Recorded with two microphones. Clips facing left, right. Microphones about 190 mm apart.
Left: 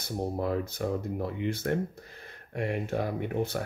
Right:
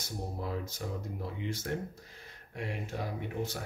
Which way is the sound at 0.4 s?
60° left (ahead or behind).